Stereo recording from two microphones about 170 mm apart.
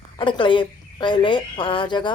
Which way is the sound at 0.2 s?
30° left (ahead or behind).